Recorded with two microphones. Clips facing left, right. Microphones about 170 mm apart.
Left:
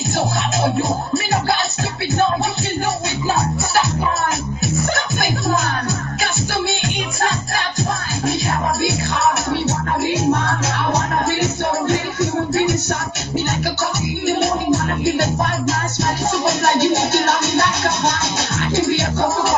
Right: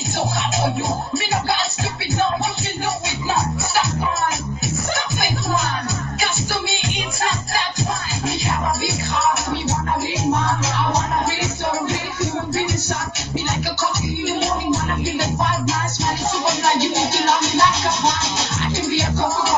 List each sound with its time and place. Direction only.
11.2 s music: 55° left (ahead or behind)
14.2 s music: 55° left (ahead or behind)